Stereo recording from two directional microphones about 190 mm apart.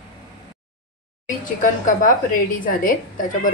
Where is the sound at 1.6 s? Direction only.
45° left (ahead or behind).